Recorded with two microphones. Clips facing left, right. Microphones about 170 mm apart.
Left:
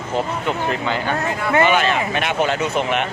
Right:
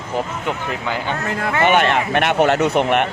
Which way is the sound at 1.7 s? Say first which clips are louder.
Right 2 dB; 60° right (ahead or behind).